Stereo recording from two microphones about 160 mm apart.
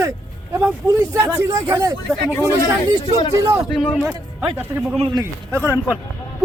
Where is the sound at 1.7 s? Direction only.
20° right (ahead or behind).